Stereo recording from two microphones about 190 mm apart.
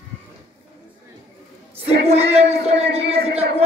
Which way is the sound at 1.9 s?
35° right (ahead or behind).